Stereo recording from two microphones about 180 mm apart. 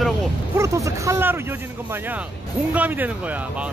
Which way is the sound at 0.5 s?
15° right (ahead or behind).